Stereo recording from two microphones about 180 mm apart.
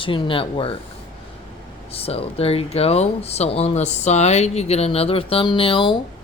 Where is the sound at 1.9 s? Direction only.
35° left (ahead or behind).